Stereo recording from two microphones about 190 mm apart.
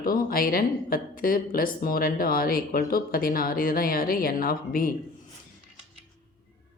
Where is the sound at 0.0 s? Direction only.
50° left (ahead or behind).